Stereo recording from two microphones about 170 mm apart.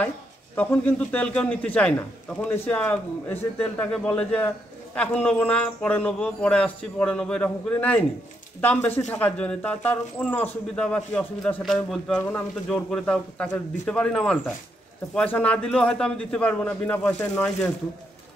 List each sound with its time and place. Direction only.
0.6 s speech: 10° left (ahead or behind)